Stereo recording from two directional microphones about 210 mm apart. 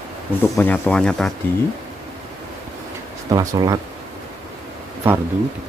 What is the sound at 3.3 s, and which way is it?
Speech, 15° right (ahead or behind).